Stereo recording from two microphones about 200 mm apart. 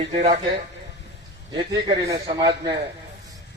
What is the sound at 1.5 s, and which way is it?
A man's voice, 20° right (ahead or behind).